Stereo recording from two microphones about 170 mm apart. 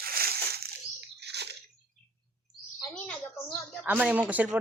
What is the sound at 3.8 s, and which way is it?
Speech, 10° right (ahead or behind).